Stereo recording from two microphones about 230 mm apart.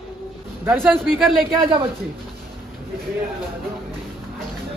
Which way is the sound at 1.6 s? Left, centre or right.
Centre.